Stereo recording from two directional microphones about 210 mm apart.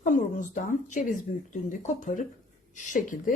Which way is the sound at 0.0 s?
40° left (ahead or behind).